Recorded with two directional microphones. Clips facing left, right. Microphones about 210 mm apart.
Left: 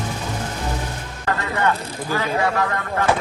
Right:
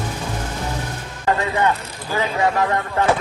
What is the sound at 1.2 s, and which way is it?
Speech, 20° right (ahead or behind).